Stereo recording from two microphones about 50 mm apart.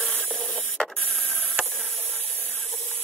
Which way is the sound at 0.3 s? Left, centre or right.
Centre.